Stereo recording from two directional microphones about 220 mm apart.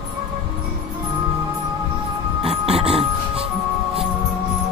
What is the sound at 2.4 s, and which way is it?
Music, 25° right (ahead or behind).